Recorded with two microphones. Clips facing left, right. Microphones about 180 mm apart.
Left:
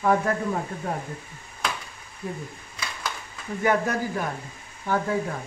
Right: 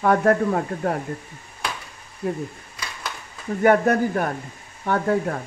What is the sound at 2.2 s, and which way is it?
Speech, 70° right (ahead or behind).